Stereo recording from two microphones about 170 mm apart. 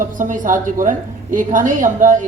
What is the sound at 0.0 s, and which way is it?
A woman's voice, 50° right (ahead or behind).